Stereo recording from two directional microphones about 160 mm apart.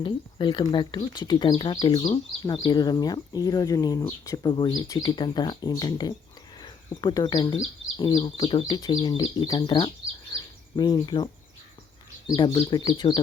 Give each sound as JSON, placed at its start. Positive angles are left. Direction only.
{"t": 0.0, "sound": "speech", "side_deg": 30}
{"t": 12.3, "sound": "speech", "side_deg": 30}